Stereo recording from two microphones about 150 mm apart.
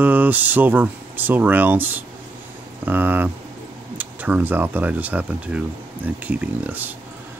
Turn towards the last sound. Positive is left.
turn(degrees=-10)  # may be behind; listen again after turning